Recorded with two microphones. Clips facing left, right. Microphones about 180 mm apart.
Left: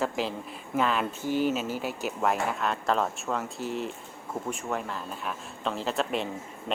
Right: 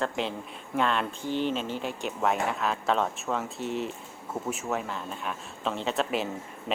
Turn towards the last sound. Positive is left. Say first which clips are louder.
# right 1 dB
turn(degrees=0)  # may be behind; listen again after turning